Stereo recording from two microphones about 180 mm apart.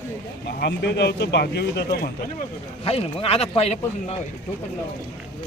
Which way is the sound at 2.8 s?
30° left (ahead or behind).